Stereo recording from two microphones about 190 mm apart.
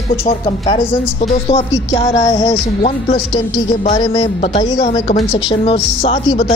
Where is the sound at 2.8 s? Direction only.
35° left (ahead or behind).